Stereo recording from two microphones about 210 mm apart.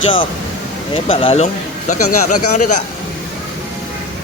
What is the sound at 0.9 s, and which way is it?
Speech, 25° left (ahead or behind).